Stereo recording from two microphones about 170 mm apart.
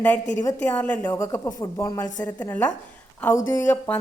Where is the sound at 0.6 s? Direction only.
10° left (ahead or behind).